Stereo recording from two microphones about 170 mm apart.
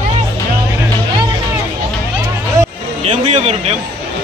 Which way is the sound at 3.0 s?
40° right (ahead or behind).